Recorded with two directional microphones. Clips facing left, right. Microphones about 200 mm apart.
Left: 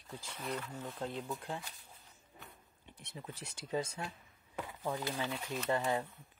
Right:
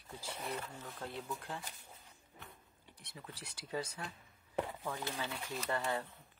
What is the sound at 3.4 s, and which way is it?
Speech, 25° left (ahead or behind).